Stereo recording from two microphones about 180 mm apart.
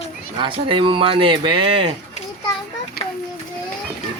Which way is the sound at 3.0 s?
60° left (ahead or behind).